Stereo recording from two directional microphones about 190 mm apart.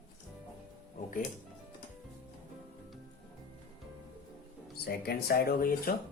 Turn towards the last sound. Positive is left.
turn(degrees=50)  # may be behind; listen again after turning